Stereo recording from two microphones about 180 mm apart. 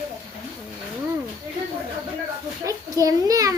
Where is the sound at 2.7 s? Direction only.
20° right (ahead or behind).